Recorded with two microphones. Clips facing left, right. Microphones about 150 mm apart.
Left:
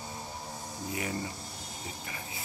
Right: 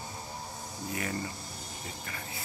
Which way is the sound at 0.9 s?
15° left (ahead or behind).